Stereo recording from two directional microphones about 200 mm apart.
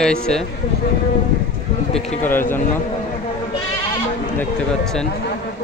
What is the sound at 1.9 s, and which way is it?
Speech, 35° left (ahead or behind).